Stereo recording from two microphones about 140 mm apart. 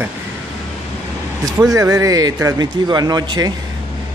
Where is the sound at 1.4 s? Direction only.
25° right (ahead or behind).